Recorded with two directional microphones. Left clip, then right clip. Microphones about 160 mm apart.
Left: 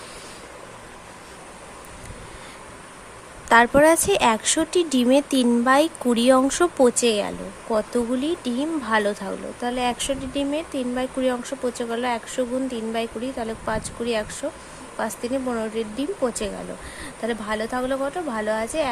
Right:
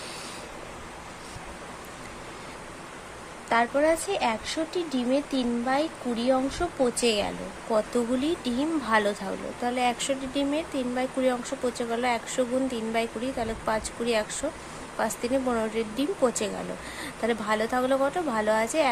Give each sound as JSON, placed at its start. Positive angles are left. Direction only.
{"t": 3.5, "sound": "speech", "side_deg": 35}
{"t": 6.9, "sound": "speech", "side_deg": 25}